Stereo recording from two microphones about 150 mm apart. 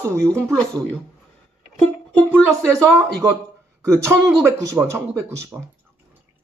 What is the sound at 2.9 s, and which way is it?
Speech, 20° right (ahead or behind).